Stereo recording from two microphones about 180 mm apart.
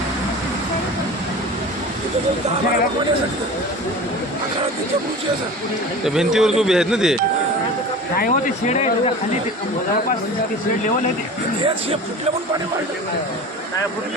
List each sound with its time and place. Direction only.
6.0 s speech: 5° right (ahead or behind)
8.2 s speech: 45° left (ahead or behind)